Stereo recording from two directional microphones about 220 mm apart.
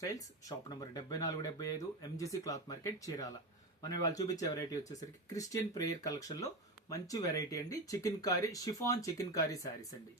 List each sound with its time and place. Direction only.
0.0 s speech: 15° left (ahead or behind)